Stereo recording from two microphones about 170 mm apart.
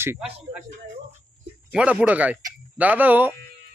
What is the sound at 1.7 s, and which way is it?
A man's voice, 5° right (ahead or behind).